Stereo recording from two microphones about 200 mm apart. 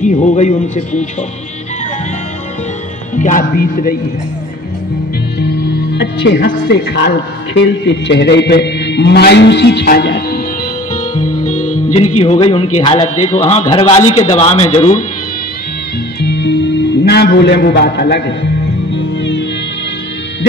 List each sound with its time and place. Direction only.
0.0 s speech: 35° left (ahead or behind)
3.2 s speech: 40° left (ahead or behind)
6.2 s a man's voice: 60° left (ahead or behind)
11.1 s music: 40° left (ahead or behind)
12.2 s speech: 30° left (ahead or behind)
16.2 s music: 55° left (ahead or behind)